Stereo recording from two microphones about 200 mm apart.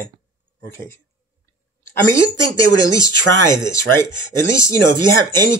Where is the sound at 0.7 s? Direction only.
10° left (ahead or behind).